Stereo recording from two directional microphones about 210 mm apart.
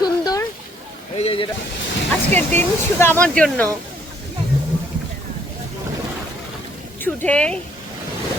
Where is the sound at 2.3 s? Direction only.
10° left (ahead or behind).